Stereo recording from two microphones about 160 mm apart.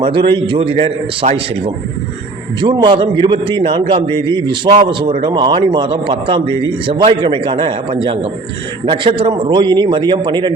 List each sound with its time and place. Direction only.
0.0 s a man's voice: 30° right (ahead or behind)